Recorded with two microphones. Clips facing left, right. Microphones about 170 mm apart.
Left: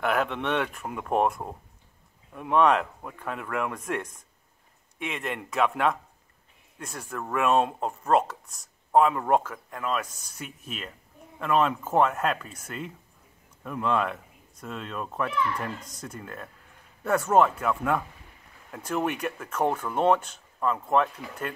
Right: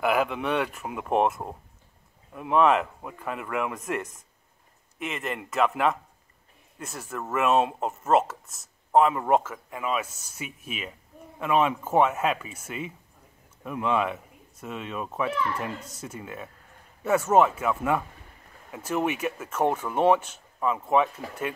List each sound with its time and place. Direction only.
0.0 s speech: 5° right (ahead or behind)